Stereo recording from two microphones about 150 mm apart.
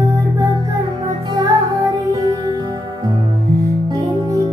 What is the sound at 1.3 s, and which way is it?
Music, 25° right (ahead or behind).